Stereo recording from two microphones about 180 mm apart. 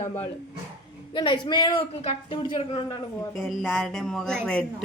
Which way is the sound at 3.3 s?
Centre (ahead or behind).